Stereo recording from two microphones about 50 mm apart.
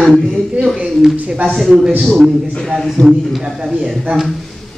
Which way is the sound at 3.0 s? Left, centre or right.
Left.